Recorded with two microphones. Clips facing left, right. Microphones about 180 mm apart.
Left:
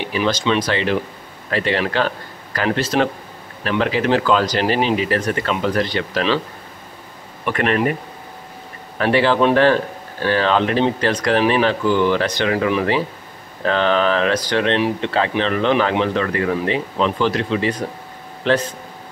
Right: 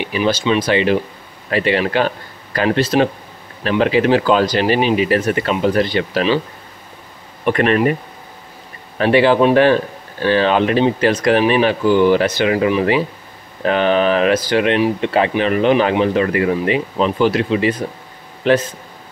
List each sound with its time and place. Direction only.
0.0 s speech: 10° right (ahead or behind)
7.5 s speech: 20° right (ahead or behind)
8.9 s speech: 20° right (ahead or behind)
13.7 s speech: 15° right (ahead or behind)